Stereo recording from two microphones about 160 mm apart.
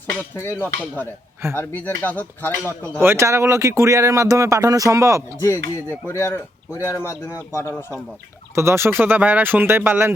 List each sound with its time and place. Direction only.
0.3 s speech: 15° left (ahead or behind)
3.0 s speech: 15° right (ahead or behind)
5.4 s speech: 15° left (ahead or behind)
8.5 s speech: 15° right (ahead or behind)